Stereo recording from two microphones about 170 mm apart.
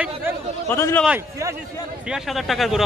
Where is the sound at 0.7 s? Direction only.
15° left (ahead or behind).